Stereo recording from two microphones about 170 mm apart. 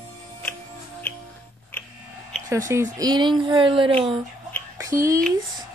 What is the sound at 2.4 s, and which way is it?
Speech, 20° right (ahead or behind).